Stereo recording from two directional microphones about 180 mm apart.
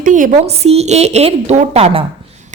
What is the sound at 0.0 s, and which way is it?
A woman's voice, 45° right (ahead or behind).